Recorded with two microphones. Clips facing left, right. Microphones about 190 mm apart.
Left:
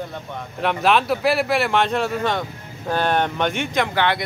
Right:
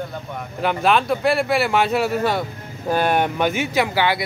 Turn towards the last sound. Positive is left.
turn(degrees=-5)  # may be behind; listen again after turning